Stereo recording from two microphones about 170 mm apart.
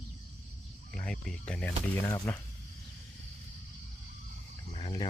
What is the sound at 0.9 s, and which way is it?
Speech, 5° left (ahead or behind).